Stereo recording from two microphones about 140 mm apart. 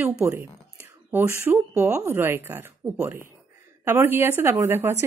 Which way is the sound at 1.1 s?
15° right (ahead or behind).